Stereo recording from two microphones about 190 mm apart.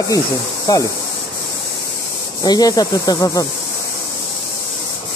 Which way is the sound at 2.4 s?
20° left (ahead or behind).